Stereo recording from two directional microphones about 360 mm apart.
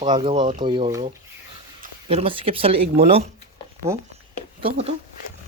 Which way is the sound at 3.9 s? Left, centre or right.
Centre.